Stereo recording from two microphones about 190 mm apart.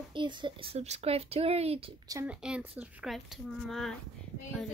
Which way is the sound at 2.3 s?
5° right (ahead or behind).